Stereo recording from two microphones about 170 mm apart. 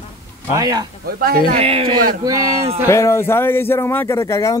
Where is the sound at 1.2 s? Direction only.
60° right (ahead or behind).